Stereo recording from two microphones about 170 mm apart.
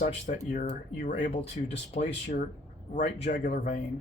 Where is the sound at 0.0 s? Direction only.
50° left (ahead or behind).